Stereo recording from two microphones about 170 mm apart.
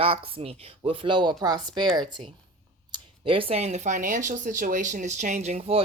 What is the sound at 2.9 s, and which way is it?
Speech, 30° right (ahead or behind).